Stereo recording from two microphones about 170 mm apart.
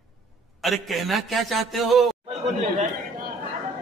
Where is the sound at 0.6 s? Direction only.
Centre (ahead or behind).